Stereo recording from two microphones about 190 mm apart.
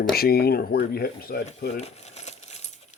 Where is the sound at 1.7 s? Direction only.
35° left (ahead or behind).